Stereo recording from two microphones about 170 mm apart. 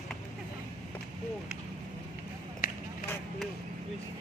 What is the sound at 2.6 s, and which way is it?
Chop, 60° left (ahead or behind).